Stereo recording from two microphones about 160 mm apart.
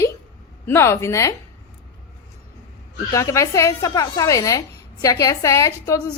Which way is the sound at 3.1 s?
20° left (ahead or behind).